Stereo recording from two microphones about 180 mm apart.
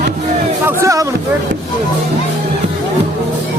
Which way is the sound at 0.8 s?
15° right (ahead or behind).